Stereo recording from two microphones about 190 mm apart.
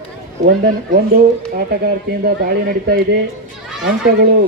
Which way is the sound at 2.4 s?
55° right (ahead or behind).